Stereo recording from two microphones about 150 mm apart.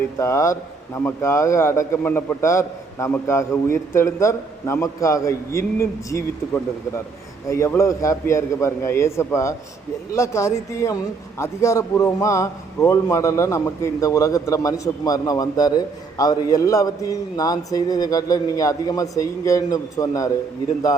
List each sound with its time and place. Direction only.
0.2 s a man's voice: 20° left (ahead or behind)